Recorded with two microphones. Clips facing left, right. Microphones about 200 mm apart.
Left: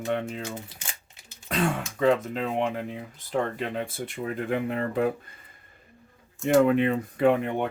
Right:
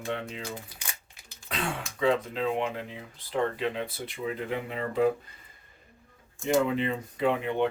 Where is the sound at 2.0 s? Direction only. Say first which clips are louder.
Left 3 dB; 50° left (ahead or behind).